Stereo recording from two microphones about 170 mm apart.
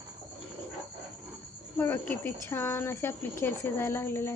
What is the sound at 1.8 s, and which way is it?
Speech, 15° left (ahead or behind).